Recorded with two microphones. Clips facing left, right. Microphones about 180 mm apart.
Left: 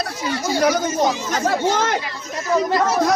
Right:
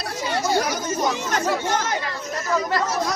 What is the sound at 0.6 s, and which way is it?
Speech, 65° left (ahead or behind).